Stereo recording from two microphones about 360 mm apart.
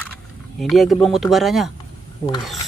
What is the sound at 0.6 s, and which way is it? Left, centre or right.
Speech, centre.